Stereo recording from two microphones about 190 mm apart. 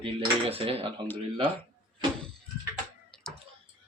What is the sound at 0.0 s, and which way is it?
Speech, 30° right (ahead or behind).